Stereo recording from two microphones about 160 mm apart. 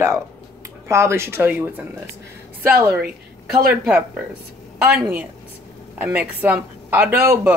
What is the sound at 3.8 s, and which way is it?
Speech, 5° right (ahead or behind).